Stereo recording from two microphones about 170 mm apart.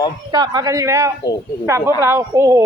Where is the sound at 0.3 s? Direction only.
25° right (ahead or behind).